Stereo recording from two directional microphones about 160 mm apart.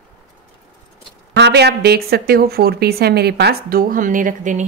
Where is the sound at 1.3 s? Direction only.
90° right; by 4.6 s 55° right (ahead or behind).